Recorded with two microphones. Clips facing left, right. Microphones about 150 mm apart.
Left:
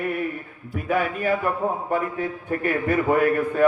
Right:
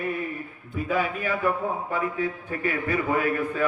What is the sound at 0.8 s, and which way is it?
Speech, 60° left (ahead or behind).